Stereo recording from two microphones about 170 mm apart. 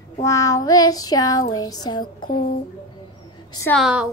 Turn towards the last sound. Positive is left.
turn(degrees=-5)  # may be behind; listen again after turning